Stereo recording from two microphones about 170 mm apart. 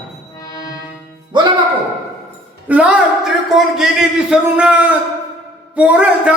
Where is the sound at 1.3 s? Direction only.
25° right (ahead or behind).